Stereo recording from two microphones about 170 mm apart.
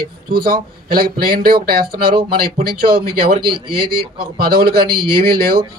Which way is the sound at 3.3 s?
30° right (ahead or behind).